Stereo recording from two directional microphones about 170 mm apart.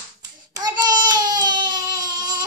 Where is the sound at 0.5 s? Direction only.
20° right (ahead or behind).